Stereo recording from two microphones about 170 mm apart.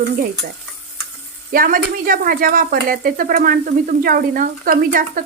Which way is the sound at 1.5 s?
55° right (ahead or behind).